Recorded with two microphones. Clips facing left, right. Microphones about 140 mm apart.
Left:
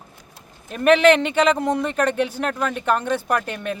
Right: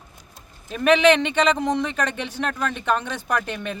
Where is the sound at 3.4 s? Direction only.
45° left (ahead or behind).